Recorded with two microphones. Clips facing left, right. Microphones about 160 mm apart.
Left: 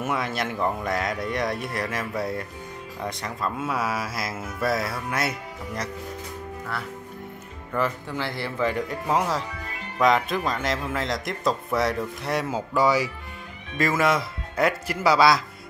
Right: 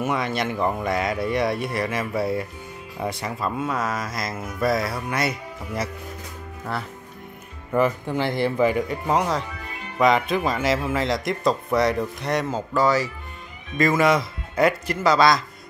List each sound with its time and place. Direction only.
0.0 s speech: centre (ahead or behind)
7.7 s speech: 15° right (ahead or behind)
8.7 s speech: centre (ahead or behind)